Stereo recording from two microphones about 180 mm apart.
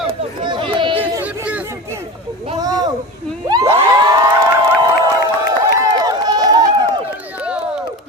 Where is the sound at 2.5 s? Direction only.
20° right (ahead or behind).